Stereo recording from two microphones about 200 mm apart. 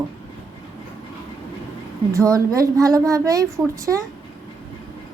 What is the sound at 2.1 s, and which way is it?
A woman's voice, 15° right (ahead or behind).